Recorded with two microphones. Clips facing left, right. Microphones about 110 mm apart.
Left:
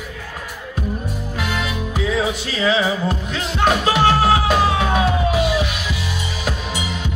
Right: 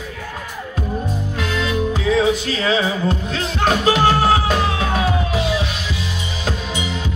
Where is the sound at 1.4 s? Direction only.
30° right (ahead or behind).